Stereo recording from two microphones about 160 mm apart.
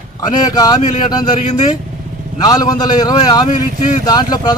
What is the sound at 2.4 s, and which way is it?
A man's voice, 25° left (ahead or behind).